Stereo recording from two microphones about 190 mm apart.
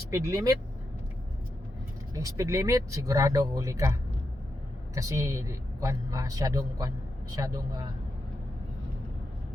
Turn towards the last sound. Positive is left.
turn(degrees=-20)  # may be behind; listen again after turning